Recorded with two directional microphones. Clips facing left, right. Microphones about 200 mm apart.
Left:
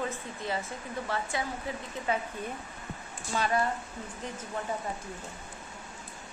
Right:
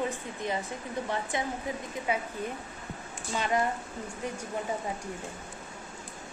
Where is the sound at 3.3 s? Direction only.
20° right (ahead or behind).